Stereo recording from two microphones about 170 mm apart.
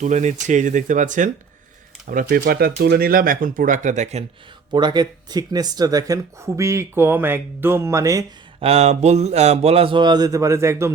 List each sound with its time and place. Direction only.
0.0 s speech: 45° right (ahead or behind)
4.7 s speech: 25° right (ahead or behind)
8.6 s speech: 40° right (ahead or behind); by 10.9 s 15° right (ahead or behind)